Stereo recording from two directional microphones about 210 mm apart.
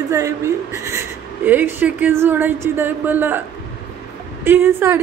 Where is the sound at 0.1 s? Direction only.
15° right (ahead or behind).